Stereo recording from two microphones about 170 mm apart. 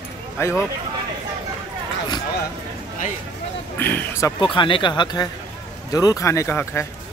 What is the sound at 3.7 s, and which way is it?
Speech, 10° left (ahead or behind).